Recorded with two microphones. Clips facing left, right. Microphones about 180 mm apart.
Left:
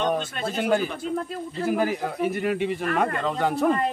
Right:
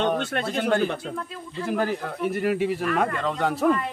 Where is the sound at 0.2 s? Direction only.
70° right (ahead or behind).